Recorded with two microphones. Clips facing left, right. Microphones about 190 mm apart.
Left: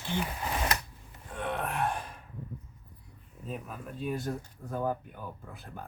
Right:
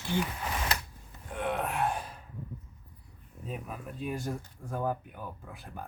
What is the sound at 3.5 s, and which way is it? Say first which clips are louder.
Speech: even; 5° right (ahead or behind).